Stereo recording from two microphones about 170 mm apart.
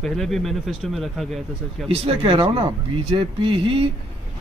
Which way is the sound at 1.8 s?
35° right (ahead or behind).